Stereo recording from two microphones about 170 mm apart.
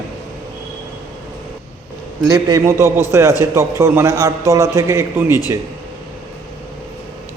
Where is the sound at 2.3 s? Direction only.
20° right (ahead or behind).